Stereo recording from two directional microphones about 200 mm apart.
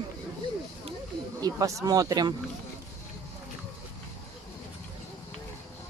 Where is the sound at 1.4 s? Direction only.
15° right (ahead or behind).